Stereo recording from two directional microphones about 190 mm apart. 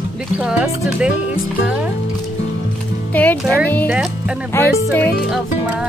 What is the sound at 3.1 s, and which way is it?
Speech, 10° left (ahead or behind).